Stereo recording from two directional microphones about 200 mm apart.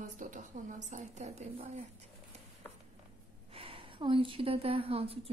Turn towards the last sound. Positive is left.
turn(degrees=-30)  # may be behind; listen again after turning